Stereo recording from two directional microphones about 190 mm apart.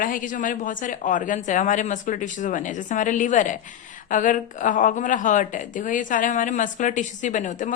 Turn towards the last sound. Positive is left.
turn(degrees=40)  # may be behind; listen again after turning